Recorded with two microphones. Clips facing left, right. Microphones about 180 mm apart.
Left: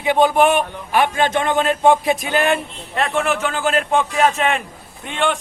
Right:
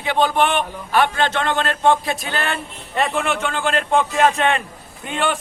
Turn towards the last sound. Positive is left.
turn(degrees=0)  # may be behind; listen again after turning